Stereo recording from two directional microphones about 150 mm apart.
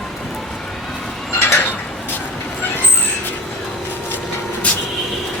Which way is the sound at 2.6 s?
15° left (ahead or behind).